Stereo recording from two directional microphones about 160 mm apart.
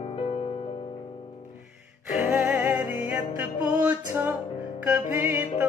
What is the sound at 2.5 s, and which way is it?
Music, 10° right (ahead or behind).